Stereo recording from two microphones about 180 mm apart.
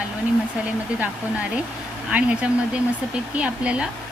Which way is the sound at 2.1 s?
5° right (ahead or behind).